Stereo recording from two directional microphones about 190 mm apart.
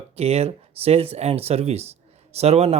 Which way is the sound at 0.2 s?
35° right (ahead or behind).